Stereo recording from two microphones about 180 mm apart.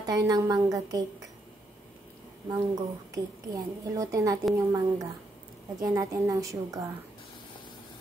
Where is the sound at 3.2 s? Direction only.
20° right (ahead or behind).